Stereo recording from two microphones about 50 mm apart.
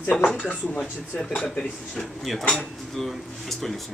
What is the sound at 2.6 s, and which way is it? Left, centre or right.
Speech, centre.